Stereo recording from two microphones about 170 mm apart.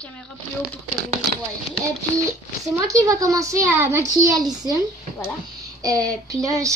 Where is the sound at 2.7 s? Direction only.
20° right (ahead or behind).